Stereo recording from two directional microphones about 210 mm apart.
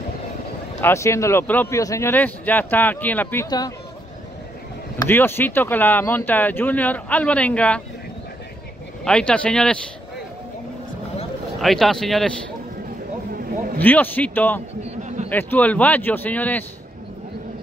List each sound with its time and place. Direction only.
0.7 s speech: 15° left (ahead or behind)
4.9 s speech: 10° left (ahead or behind)
9.0 s speech: 5° left (ahead or behind)
11.6 s speech: centre (ahead or behind)
13.7 s speech: 10° left (ahead or behind)
14.8 s a sound: 30° right (ahead or behind)
15.2 s speech: 10° left (ahead or behind)